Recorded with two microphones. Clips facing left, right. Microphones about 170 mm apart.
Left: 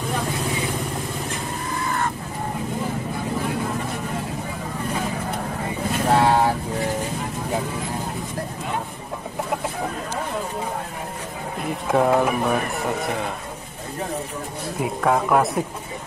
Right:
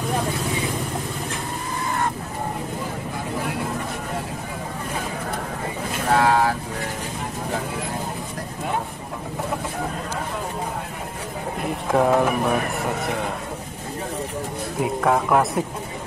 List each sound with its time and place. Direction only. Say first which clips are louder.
6.1 s vehicle: even; 25° left (ahead or behind)
11.6 s speech: even; centre (ahead or behind)
14.8 s speech: even; centre (ahead or behind)